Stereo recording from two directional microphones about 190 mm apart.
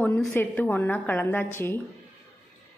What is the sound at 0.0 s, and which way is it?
A woman's voice, 10° left (ahead or behind).